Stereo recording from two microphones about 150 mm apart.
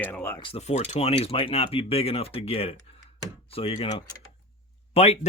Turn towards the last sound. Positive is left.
turn(degrees=45)  # may be behind; listen again after turning